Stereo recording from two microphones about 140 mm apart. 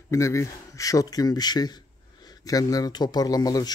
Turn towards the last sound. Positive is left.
turn(degrees=25)  # may be behind; listen again after turning